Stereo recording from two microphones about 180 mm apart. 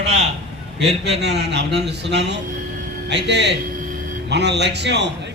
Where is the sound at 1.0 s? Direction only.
70° right (ahead or behind).